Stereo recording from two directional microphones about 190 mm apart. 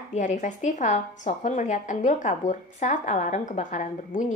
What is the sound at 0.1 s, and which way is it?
A woman's voice, 40° left (ahead or behind).